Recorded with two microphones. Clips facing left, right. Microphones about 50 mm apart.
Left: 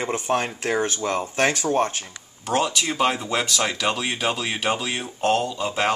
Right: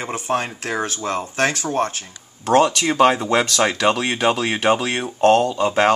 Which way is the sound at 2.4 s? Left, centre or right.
Right.